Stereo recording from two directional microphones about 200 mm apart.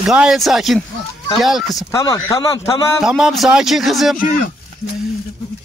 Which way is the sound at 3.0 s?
5° right (ahead or behind).